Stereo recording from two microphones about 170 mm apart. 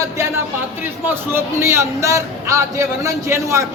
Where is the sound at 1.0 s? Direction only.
15° right (ahead or behind).